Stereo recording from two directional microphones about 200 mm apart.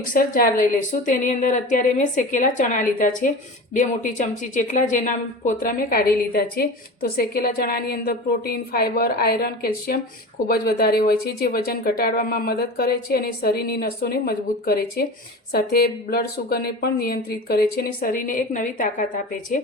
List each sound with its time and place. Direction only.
0.0 s a woman's voice: 45° left (ahead or behind)